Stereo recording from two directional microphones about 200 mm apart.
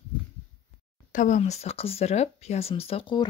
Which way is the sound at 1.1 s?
40° left (ahead or behind).